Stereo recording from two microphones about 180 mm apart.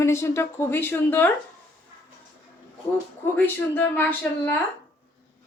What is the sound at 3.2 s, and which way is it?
Speech, 10° left (ahead or behind).